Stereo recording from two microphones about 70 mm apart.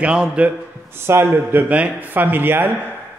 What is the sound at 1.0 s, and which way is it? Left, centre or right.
A man's voice, right.